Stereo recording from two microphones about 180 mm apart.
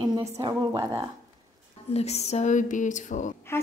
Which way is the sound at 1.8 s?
35° left (ahead or behind).